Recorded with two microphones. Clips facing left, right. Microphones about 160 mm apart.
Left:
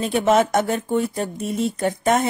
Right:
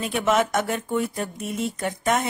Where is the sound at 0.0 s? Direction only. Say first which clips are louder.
Left 4 dB; 30° left (ahead or behind).